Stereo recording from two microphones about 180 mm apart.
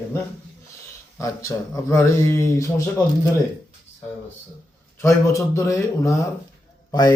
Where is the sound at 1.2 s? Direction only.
15° left (ahead or behind).